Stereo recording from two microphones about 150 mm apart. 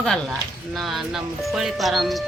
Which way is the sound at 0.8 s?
Centre (ahead or behind).